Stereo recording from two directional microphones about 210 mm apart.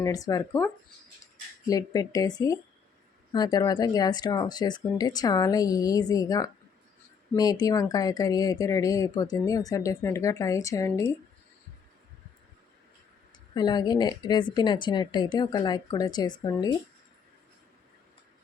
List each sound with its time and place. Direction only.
0.0 s speech: 15° left (ahead or behind)
13.5 s a woman's voice: 20° left (ahead or behind)